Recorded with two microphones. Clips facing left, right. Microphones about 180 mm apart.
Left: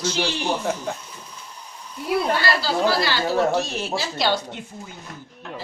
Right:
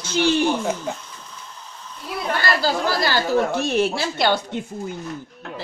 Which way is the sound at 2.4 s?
45° right (ahead or behind).